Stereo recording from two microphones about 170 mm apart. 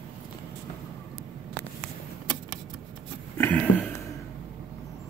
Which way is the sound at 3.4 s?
5° left (ahead or behind).